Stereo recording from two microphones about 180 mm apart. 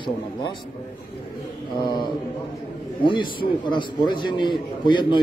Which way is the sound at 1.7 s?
25° left (ahead or behind).